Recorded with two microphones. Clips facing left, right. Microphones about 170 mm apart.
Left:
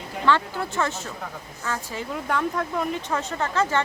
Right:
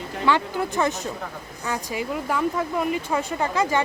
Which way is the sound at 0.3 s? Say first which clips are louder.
Right 1 dB; 15° right (ahead or behind).